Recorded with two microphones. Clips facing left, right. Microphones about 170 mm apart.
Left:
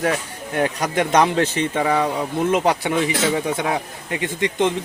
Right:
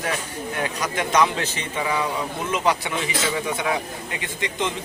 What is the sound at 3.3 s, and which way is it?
Speech, 40° left (ahead or behind).